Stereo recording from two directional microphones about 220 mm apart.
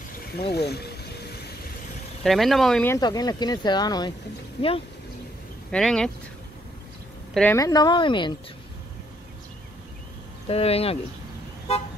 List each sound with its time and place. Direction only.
0.4 s speech: 45° left (ahead or behind)
2.2 s a woman's voice: centre (ahead or behind); by 4.8 s 25° left (ahead or behind)
5.7 s speech: 5° left (ahead or behind)
7.3 s a woman's voice: 10° left (ahead or behind)
10.5 s a woman's voice: 25° left (ahead or behind)